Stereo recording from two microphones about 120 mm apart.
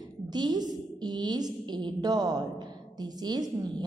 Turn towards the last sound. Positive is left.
turn(degrees=-35)  # may be behind; listen again after turning